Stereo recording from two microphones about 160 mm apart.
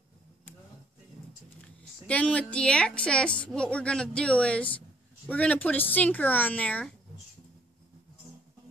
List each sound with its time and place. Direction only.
2.0 s a woman's voice: 10° left (ahead or behind)